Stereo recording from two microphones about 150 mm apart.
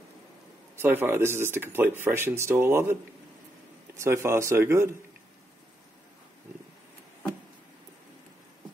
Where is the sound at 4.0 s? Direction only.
15° right (ahead or behind).